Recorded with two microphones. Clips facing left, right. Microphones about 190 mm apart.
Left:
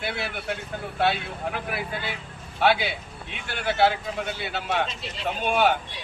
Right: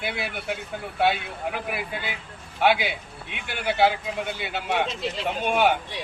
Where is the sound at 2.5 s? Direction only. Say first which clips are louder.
Even; 15° right (ahead or behind).